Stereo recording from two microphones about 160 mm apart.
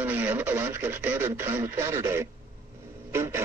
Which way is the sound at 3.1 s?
15° right (ahead or behind).